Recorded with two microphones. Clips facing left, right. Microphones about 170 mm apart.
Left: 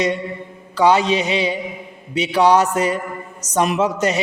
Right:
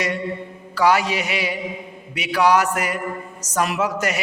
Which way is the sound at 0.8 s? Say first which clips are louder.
Left 3 dB; 20° left (ahead or behind).